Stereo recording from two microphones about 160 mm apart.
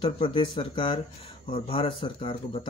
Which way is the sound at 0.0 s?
30° left (ahead or behind).